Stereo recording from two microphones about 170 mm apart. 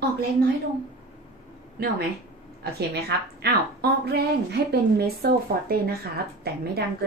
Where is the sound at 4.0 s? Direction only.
75° right (ahead or behind).